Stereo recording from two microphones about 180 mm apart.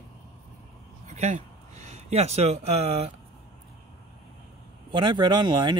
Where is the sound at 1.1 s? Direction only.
40° right (ahead or behind).